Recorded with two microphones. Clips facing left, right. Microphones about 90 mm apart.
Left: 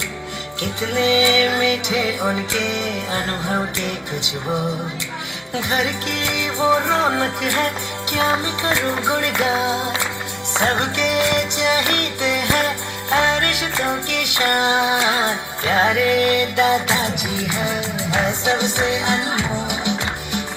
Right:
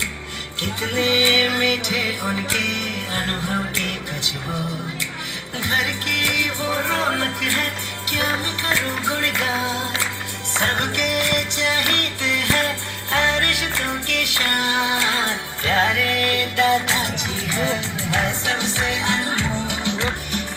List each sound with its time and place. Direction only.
0.6 s music: 20° left (ahead or behind)